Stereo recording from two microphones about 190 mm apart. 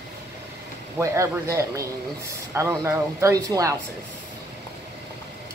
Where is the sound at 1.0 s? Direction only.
15° right (ahead or behind).